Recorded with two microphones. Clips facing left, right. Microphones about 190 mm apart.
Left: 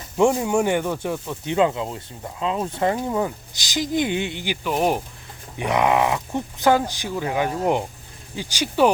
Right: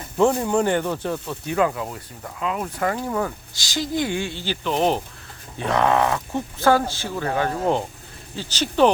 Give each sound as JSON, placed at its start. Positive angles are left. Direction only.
{"t": 0.2, "sound": "speech", "side_deg": 15}